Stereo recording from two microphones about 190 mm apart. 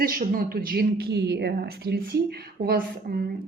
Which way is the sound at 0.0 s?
50° right (ahead or behind).